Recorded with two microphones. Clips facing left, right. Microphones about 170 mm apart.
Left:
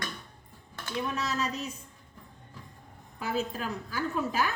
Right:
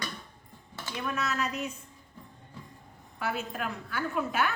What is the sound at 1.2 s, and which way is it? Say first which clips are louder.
Speech: even; 35° left (ahead or behind).